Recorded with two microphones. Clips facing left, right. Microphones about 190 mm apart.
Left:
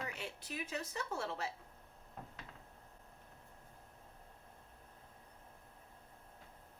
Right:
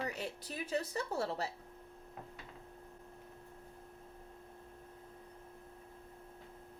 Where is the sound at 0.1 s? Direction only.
40° right (ahead or behind).